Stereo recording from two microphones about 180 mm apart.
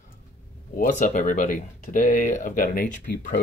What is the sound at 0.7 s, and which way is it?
Speech, 45° left (ahead or behind).